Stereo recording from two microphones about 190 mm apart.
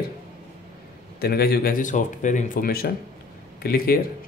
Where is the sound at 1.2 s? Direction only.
55° left (ahead or behind).